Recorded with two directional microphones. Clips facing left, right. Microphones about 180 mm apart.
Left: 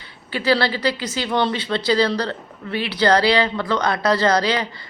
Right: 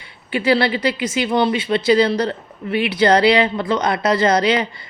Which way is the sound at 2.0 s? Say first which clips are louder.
Right 3 dB; 25° right (ahead or behind).